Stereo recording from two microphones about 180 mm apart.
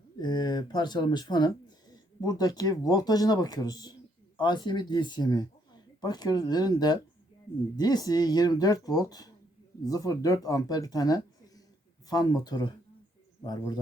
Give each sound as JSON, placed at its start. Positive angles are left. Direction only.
{"t": 0.2, "sound": "speech", "side_deg": 25}